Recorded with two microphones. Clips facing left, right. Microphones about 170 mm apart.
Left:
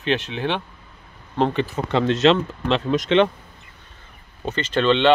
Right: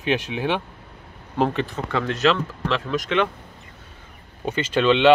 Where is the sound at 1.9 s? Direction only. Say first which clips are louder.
Left 4 dB; 25° left (ahead or behind).